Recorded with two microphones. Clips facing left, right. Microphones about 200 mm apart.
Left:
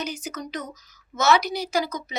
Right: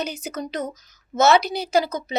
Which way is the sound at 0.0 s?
30° right (ahead or behind).